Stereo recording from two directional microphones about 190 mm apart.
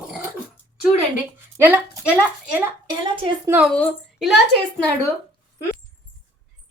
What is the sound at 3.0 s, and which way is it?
Speech, 25° right (ahead or behind).